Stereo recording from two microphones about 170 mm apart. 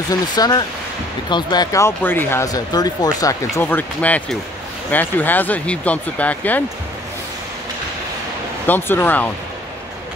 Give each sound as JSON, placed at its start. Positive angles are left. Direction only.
{"t": 0.1, "sound": "speech", "side_deg": 25}
{"t": 3.5, "sound": "speech", "side_deg": 10}
{"t": 8.6, "sound": "speech", "side_deg": 10}